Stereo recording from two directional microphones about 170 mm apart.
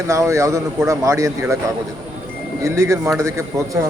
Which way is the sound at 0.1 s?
15° right (ahead or behind).